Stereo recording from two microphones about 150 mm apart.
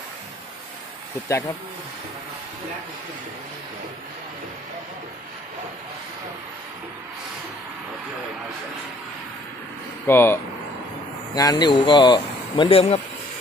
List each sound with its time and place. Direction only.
10.0 s speech: 15° left (ahead or behind)
11.3 s speech: 25° left (ahead or behind)